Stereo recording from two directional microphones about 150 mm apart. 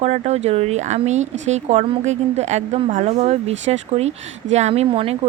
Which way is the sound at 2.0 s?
50° right (ahead or behind).